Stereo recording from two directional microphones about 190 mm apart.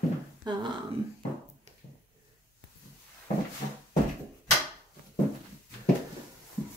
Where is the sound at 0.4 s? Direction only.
25° right (ahead or behind).